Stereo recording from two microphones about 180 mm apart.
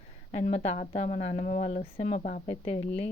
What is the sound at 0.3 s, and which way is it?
Speech, 40° left (ahead or behind).